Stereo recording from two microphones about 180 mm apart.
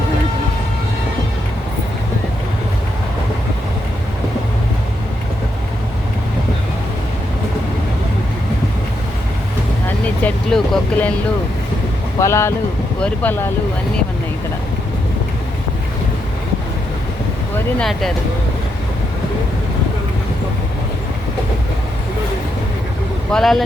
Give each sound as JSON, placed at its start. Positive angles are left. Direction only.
{"t": 10.2, "sound": "speech", "side_deg": 5}
{"t": 12.2, "sound": "speech", "side_deg": 15}
{"t": 17.7, "sound": "speech", "side_deg": 0}
{"t": 23.3, "sound": "speech", "side_deg": 0}